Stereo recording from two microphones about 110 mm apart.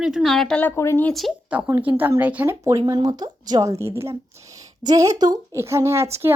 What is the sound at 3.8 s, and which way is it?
A woman's voice, 25° right (ahead or behind).